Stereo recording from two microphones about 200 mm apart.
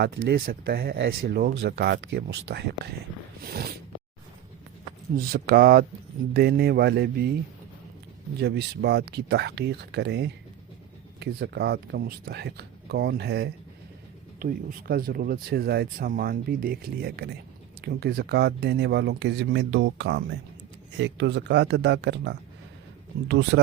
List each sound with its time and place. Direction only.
0.0 s speech: 50° right (ahead or behind)
1.5 s speech: 65° right (ahead or behind)
5.1 s speech: 50° right (ahead or behind)
8.4 s speech: 55° right (ahead or behind)
14.3 s speech: 45° right (ahead or behind)